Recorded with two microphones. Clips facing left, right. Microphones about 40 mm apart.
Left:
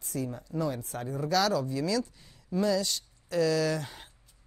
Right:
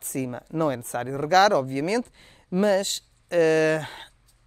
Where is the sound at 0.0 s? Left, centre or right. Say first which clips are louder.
Right 5 dB; right.